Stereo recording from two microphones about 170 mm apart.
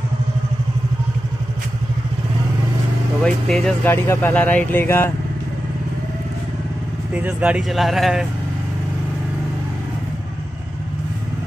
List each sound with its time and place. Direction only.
3.3 s speech: 5° left (ahead or behind)
7.2 s speech: 10° right (ahead or behind)